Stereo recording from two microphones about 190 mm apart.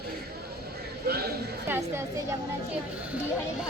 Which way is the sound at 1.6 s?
10° right (ahead or behind).